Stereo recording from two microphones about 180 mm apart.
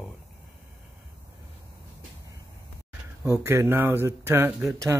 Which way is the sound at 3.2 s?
15° right (ahead or behind).